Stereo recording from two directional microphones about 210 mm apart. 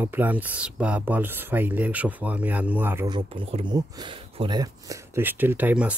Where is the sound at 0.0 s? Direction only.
10° right (ahead or behind).